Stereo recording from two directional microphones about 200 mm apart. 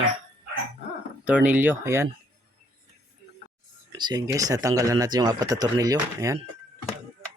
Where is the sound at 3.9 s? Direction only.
20° right (ahead or behind).